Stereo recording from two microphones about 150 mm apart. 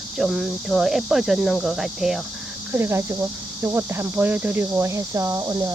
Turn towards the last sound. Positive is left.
turn(degrees=-20)  # may be behind; listen again after turning